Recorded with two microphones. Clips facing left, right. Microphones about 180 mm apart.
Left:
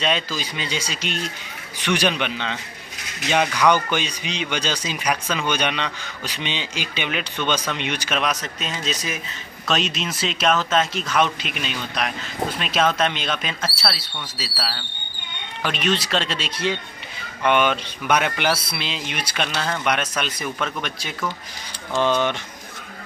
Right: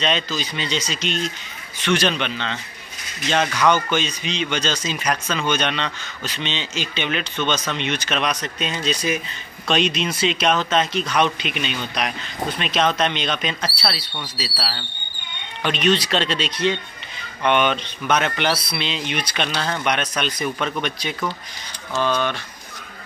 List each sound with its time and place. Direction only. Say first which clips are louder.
0.0 s speech: right 1 dB; 10° left (ahead or behind)
21.9 s speech: left 1 dB; 20° left (ahead or behind)